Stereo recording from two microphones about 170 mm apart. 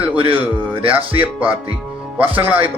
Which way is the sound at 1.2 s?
10° right (ahead or behind).